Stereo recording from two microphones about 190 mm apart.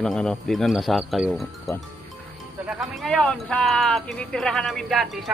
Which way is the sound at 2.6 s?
5° right (ahead or behind).